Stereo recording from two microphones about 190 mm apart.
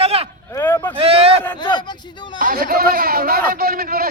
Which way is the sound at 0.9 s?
30° right (ahead or behind).